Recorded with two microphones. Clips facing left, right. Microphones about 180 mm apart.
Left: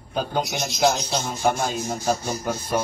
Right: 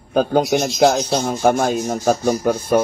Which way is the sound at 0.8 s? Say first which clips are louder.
Right 4 dB; 55° right (ahead or behind).